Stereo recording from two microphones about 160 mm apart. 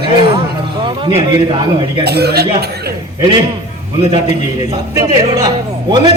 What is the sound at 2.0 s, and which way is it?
Speech, 90° right.